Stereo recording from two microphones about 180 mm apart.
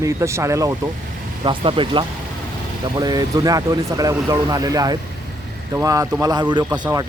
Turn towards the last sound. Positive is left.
turn(degrees=-20)  # may be behind; listen again after turning